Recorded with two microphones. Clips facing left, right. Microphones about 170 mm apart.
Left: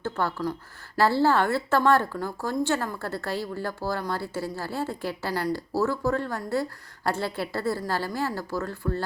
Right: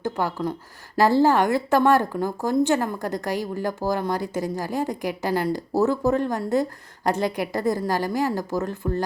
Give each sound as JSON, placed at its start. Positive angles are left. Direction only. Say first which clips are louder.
{"t": 0.0, "sound": "speech", "louder": "right 3 dB", "side_deg": -15}